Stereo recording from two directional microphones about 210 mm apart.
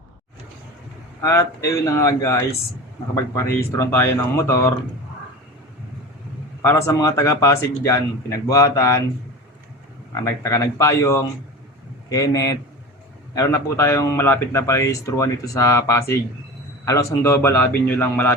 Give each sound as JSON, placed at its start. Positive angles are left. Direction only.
{"t": 1.2, "sound": "speech", "side_deg": 10}
{"t": 6.6, "sound": "speech", "side_deg": 10}
{"t": 10.2, "sound": "speech", "side_deg": 15}